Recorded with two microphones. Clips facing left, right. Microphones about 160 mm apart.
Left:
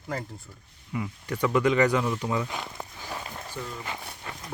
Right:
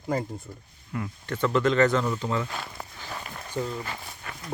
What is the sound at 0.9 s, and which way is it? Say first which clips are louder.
Speech: even; 5° left (ahead or behind).